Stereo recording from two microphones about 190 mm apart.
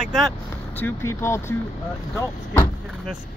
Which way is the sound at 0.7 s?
10° left (ahead or behind).